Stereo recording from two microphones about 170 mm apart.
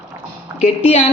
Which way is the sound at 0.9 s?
40° left (ahead or behind).